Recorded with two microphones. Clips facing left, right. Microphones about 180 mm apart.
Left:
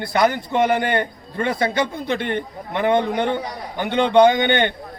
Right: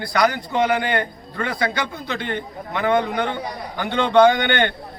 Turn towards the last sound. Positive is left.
turn(degrees=20)  # may be behind; listen again after turning